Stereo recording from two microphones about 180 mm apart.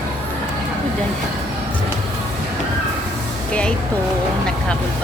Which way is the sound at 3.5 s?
5° left (ahead or behind).